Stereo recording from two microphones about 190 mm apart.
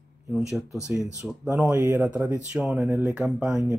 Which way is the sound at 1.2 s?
5° right (ahead or behind).